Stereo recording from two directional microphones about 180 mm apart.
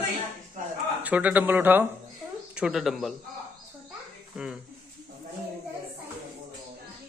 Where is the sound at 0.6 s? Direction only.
45° right (ahead or behind).